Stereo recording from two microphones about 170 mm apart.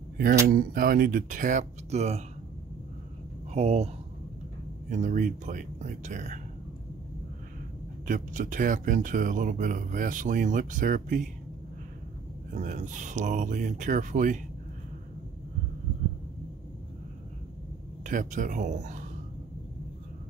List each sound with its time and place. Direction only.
0.5 s speech: 60° right (ahead or behind); by 2.2 s 40° right (ahead or behind)
3.5 s speech: 40° right (ahead or behind)
4.8 s speech: 50° right (ahead or behind)
8.1 s speech: 50° right (ahead or behind)
12.5 s speech: 50° right (ahead or behind)
18.0 s speech: 50° right (ahead or behind)